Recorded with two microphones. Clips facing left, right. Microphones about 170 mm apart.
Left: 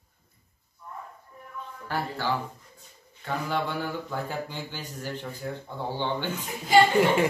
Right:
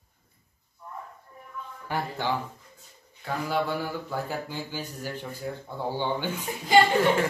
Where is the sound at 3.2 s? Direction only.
10° right (ahead or behind).